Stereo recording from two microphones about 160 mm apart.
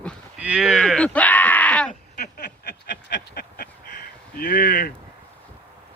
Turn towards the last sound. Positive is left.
turn(degrees=70)  # may be behind; listen again after turning